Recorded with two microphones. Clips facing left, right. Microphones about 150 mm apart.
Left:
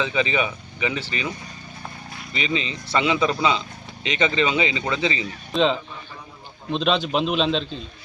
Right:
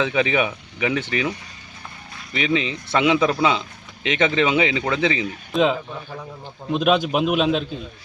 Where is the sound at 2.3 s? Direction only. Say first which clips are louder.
Right 4 dB; 65° right (ahead or behind).